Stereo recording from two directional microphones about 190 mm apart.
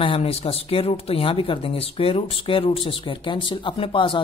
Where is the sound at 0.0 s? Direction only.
30° left (ahead or behind).